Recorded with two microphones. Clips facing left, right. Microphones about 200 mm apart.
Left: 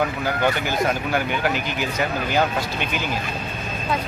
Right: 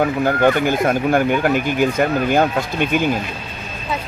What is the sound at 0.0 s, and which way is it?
Speech, 50° right (ahead or behind).